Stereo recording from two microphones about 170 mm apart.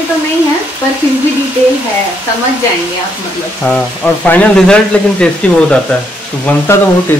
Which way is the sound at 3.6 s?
10° left (ahead or behind).